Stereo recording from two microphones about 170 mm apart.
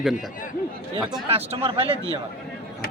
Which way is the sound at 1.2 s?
35° right (ahead or behind).